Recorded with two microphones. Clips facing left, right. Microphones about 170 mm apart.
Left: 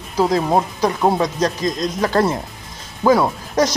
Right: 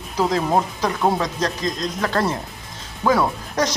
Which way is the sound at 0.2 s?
15° left (ahead or behind).